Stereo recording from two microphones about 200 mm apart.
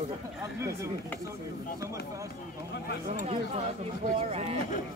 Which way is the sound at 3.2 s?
30° right (ahead or behind).